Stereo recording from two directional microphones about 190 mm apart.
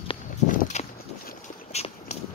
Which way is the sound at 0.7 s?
35° left (ahead or behind).